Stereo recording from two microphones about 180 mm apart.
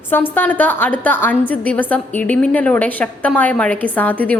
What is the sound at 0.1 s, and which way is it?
A woman's voice, 10° left (ahead or behind).